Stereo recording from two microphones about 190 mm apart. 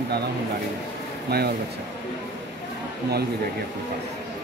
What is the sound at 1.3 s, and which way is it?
Speech, 55° right (ahead or behind).